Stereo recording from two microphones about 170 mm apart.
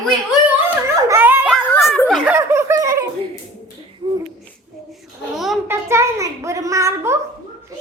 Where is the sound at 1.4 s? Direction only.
5° left (ahead or behind).